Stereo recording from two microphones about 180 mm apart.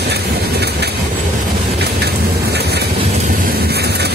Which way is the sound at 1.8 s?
65° right (ahead or behind).